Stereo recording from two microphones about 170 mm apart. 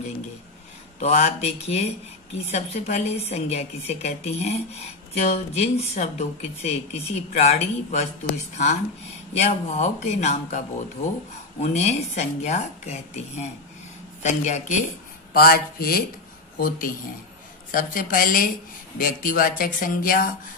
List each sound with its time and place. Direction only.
0.9 s speech: 40° left (ahead or behind)
9.4 s speech: 40° left (ahead or behind)
15.3 s speech: 60° left (ahead or behind)